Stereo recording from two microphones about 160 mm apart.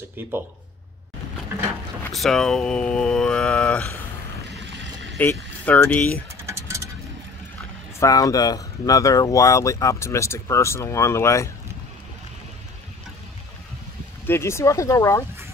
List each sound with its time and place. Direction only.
0.2 s speech: 15° right (ahead or behind)
2.1 s speech: centre (ahead or behind)
5.2 s speech: 10° left (ahead or behind)
6.4 s a sound: 20° right (ahead or behind)
8.0 s speech: 20° left (ahead or behind)
14.2 s speech: 15° left (ahead or behind)